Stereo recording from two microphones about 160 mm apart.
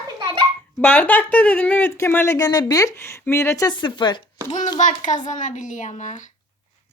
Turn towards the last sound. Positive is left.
turn(degrees=50)  # may be behind; listen again after turning